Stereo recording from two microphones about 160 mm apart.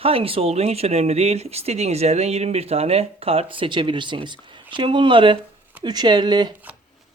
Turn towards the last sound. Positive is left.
turn(degrees=-30)  # may be behind; listen again after turning